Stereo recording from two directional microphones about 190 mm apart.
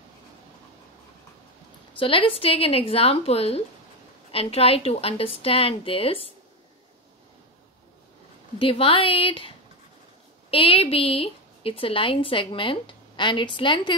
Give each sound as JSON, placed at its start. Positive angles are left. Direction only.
{"t": 2.0, "sound": "a woman's voice", "side_deg": 30}
{"t": 8.5, "sound": "a woman's voice", "side_deg": 30}
{"t": 10.5, "sound": "a woman's voice", "side_deg": 30}